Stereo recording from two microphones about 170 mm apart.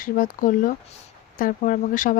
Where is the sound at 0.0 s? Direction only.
55° left (ahead or behind).